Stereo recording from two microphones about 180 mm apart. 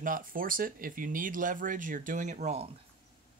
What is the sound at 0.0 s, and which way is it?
Speech, 50° right (ahead or behind).